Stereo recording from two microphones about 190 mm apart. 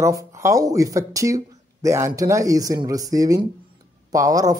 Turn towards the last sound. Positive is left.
turn(degrees=-20)  # may be behind; listen again after turning